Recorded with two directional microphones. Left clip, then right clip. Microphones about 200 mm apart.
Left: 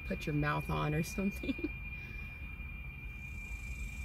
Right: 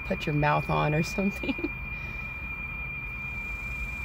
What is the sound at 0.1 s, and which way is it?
Speech, 35° right (ahead or behind).